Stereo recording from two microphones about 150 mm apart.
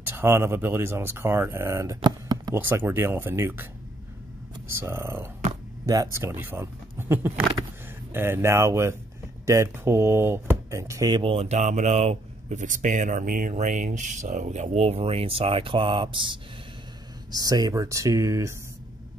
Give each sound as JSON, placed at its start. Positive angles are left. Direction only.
{"t": 0.0, "sound": "speech", "side_deg": -15}
{"t": 2.0, "sound": "a sound", "side_deg": -25}
{"t": 2.6, "sound": "speech", "side_deg": -15}
{"t": 4.6, "sound": "speech", "side_deg": -15}